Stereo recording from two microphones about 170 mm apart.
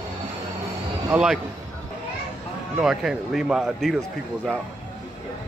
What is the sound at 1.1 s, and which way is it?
Speech, 5° right (ahead or behind).